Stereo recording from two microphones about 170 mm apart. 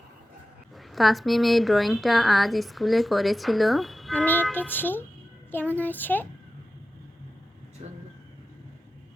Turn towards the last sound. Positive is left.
turn(degrees=-40)  # may be behind; listen again after turning